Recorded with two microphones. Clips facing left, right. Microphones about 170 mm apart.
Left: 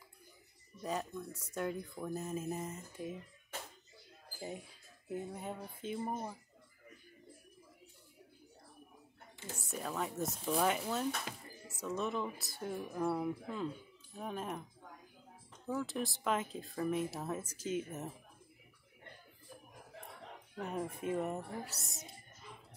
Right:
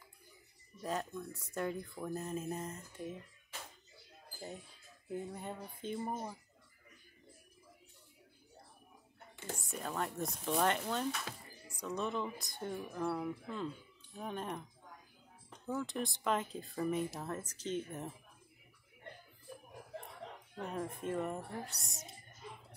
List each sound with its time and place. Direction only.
0.8 s speech: centre (ahead or behind)
4.4 s speech: 10° left (ahead or behind)
9.7 s speech: centre (ahead or behind)
15.7 s speech: centre (ahead or behind)
20.5 s speech: 5° left (ahead or behind)